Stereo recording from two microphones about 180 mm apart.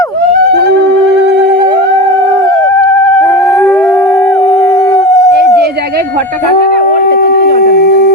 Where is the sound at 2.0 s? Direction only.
30° right (ahead or behind).